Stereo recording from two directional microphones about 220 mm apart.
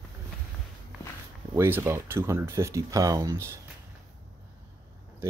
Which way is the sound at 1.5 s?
10° right (ahead or behind).